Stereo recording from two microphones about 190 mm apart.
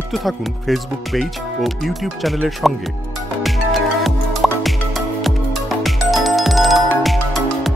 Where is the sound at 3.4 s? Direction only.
Centre (ahead or behind).